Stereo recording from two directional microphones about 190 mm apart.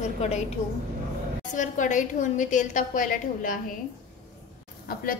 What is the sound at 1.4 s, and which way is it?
A woman's voice, 40° left (ahead or behind).